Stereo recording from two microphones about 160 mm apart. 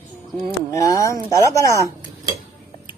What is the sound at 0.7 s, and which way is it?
Speech, 20° left (ahead or behind).